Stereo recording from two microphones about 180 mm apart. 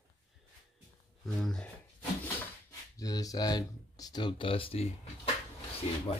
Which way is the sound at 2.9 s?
20° left (ahead or behind).